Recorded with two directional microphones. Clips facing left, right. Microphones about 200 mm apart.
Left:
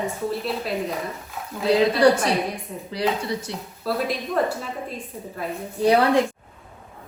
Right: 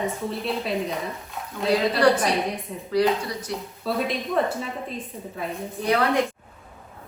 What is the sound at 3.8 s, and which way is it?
A woman's voice, centre (ahead or behind).